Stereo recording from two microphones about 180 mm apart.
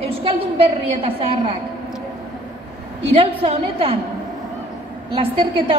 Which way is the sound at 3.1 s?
30° right (ahead or behind).